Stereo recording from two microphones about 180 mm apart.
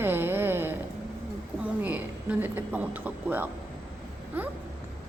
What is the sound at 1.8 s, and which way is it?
A woman's voice, 10° right (ahead or behind).